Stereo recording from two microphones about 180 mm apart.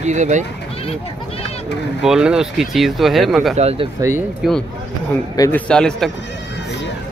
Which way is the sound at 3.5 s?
35° right (ahead or behind).